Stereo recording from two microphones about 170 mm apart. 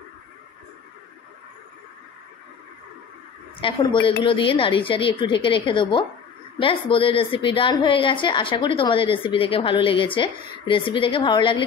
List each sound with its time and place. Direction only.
3.6 s a woman's voice: 30° left (ahead or behind)